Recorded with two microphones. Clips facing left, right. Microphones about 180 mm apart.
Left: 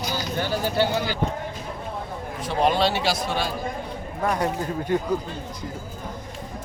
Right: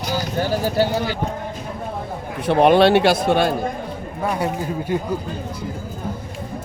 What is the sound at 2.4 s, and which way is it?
A man's voice, 65° right (ahead or behind).